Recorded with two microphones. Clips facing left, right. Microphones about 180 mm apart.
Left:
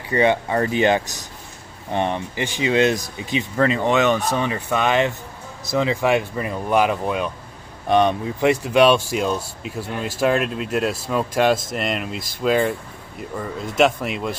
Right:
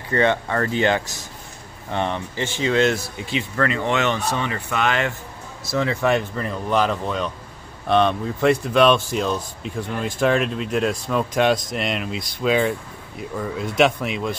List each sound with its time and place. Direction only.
0.1 s speech: 15° left (ahead or behind)